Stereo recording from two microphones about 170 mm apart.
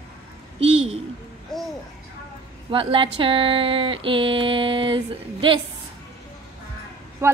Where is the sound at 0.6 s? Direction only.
35° right (ahead or behind).